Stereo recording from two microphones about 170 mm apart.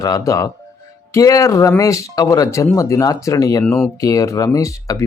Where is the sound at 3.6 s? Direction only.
5° left (ahead or behind).